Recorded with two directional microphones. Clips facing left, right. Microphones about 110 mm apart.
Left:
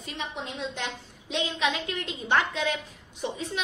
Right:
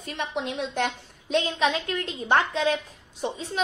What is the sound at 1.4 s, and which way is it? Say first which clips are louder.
A woman's voice: right 4 dB; 40° right (ahead or behind).